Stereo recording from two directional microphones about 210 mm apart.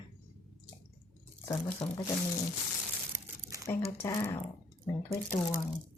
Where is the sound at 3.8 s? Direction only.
10° left (ahead or behind).